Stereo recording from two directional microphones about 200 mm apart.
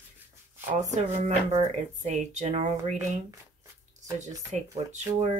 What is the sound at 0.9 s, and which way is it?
Speech, 35° right (ahead or behind).